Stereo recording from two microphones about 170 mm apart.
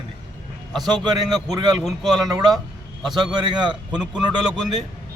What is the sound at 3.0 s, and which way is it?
Speech, 25° right (ahead or behind).